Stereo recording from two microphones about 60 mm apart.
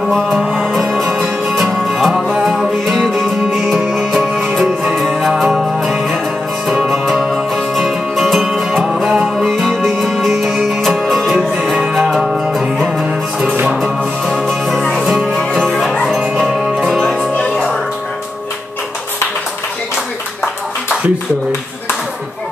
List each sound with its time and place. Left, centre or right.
0.1 s music: centre
9.5 s music: centre
13.7 s music: centre
14.7 s music: centre
15.0 s music: centre
17.4 s music: centre